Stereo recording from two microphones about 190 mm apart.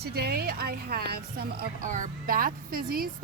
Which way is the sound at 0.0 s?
55° right (ahead or behind).